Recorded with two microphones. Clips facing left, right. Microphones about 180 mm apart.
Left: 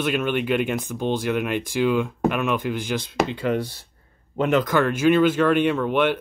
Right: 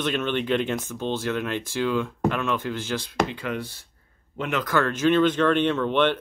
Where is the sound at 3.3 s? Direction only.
30° left (ahead or behind).